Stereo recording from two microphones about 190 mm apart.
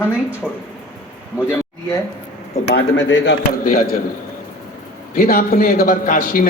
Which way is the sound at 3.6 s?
45° left (ahead or behind).